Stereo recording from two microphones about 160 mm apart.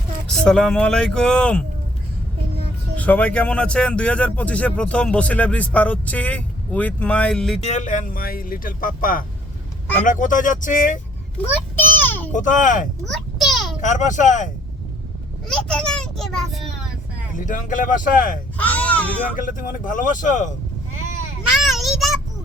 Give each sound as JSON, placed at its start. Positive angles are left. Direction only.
{"t": 0.3, "sound": "speech", "side_deg": 5}
{"t": 2.9, "sound": "speech", "side_deg": 10}
{"t": 7.6, "sound": "speech", "side_deg": 45}
{"t": 11.8, "sound": "a sound", "side_deg": 10}
{"t": 12.3, "sound": "speech", "side_deg": 55}
{"t": 13.1, "sound": "a sound", "side_deg": 0}
{"t": 13.8, "sound": "speech", "side_deg": 50}
{"t": 15.4, "sound": "a child's voice", "side_deg": 5}
{"t": 17.3, "sound": "speech", "side_deg": 55}
{"t": 18.5, "sound": "speech", "side_deg": 10}
{"t": 19.4, "sound": "speech", "side_deg": 55}
{"t": 21.6, "sound": "child singing", "side_deg": 0}